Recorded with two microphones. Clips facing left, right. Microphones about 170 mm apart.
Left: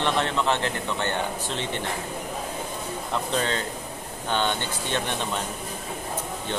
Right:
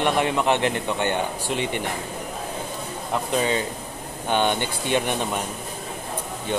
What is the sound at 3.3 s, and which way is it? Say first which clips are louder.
Speech: right 5 dB; 10° right (ahead or behind).